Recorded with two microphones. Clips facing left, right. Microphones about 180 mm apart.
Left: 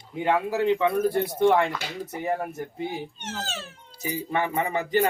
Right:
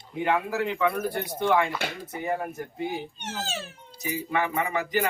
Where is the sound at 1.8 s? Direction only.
60° right (ahead or behind).